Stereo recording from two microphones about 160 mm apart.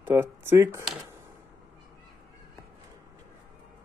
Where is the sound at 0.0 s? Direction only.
15° right (ahead or behind).